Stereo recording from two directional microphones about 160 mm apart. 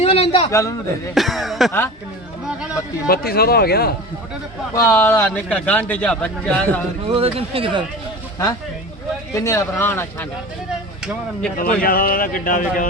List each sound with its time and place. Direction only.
0.0 s a sound: 40° left (ahead or behind)
0.5 s a man's voice: 20° left (ahead or behind)
1.1 s a sound: centre (ahead or behind)
3.1 s speech: 75° left (ahead or behind)
4.7 s a man's voice: 20° left (ahead or behind)
7.1 s speech: 35° right (ahead or behind)
9.3 s a man's voice: 20° left (ahead or behind)
11.8 s speech: 60° left (ahead or behind)